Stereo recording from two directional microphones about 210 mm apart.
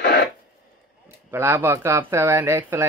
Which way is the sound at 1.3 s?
10° right (ahead or behind).